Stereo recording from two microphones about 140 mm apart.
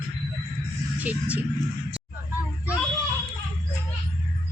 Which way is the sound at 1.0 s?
10° right (ahead or behind).